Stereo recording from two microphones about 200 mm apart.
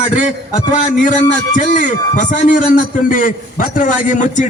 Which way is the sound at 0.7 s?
35° left (ahead or behind).